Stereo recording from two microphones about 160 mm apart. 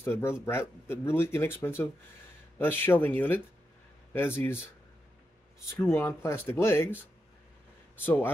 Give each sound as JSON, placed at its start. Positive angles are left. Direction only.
{"t": 0.0, "sound": "speech", "side_deg": 15}
{"t": 5.9, "sound": "speech", "side_deg": 15}